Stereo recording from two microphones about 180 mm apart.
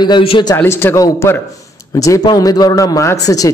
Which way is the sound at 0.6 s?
10° left (ahead or behind).